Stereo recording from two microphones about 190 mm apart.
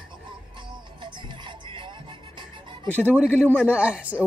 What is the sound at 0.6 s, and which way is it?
Music, 25° right (ahead or behind).